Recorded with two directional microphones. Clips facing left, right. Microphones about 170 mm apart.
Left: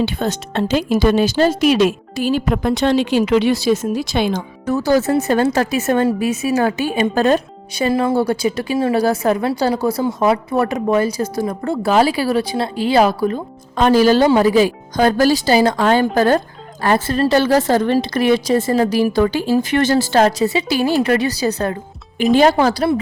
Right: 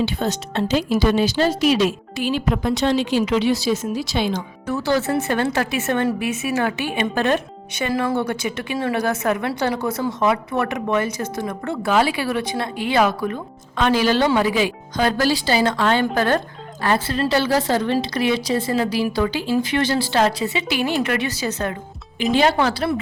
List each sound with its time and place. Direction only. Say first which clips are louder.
0.0 s a woman's voice: left 2 dB; 50° left (ahead or behind)
2.1 s a woman's voice: left 4 dB; 45° left (ahead or behind)